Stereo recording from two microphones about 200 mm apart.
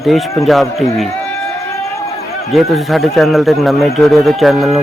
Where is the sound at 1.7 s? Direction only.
15° left (ahead or behind).